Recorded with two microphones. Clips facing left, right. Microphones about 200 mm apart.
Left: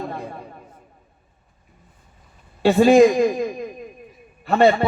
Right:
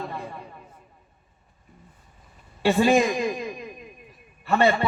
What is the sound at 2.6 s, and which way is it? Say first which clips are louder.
A man's voice: left 7 dB; 35° left (ahead or behind).